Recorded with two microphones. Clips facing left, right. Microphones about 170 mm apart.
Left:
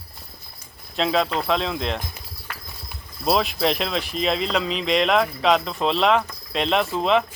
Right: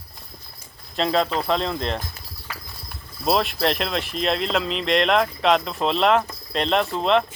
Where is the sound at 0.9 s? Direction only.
Centre (ahead or behind).